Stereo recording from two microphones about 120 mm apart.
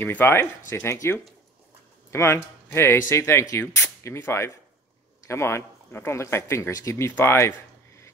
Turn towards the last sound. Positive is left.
turn(degrees=20)  # may be behind; listen again after turning